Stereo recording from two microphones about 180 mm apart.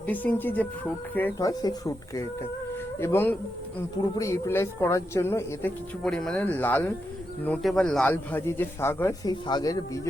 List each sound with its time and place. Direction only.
0.0 s a man's voice: 10° left (ahead or behind)
6.0 s a man's voice: 5° left (ahead or behind)
9.3 s speech: 25° left (ahead or behind)